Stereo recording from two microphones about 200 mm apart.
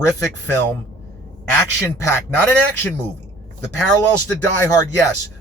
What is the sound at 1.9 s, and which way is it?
Speech, 10° left (ahead or behind).